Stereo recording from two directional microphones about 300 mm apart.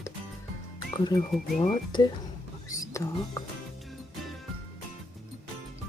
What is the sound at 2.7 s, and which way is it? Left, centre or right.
Music, centre.